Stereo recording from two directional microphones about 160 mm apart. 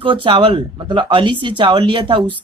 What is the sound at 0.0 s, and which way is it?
Speech, 35° right (ahead or behind).